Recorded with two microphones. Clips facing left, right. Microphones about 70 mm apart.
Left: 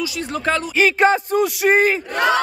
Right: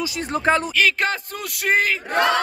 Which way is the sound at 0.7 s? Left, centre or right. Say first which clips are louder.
Left 5 dB; centre.